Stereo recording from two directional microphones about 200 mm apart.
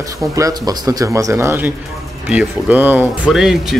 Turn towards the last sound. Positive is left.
turn(degrees=0)  # may be behind; listen again after turning